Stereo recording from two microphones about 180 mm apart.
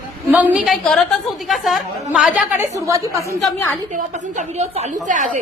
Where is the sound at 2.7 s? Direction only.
15° right (ahead or behind).